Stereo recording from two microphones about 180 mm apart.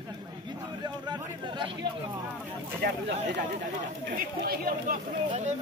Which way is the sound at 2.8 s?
65° right (ahead or behind).